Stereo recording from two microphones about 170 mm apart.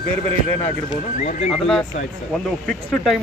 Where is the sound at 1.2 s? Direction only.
45° left (ahead or behind).